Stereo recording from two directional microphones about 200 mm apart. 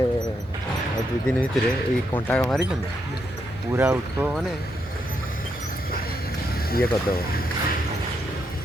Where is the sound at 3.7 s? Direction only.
10° right (ahead or behind).